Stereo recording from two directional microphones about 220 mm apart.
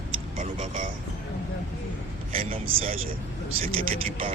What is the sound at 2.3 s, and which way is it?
A man's voice, 25° right (ahead or behind).